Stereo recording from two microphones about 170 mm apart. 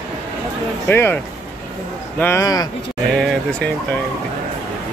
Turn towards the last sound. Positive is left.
turn(degrees=5)  # may be behind; listen again after turning